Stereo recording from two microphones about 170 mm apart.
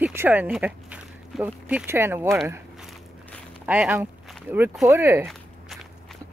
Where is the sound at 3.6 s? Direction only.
10° right (ahead or behind).